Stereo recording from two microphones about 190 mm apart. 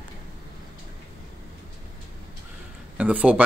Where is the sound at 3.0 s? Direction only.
5° right (ahead or behind).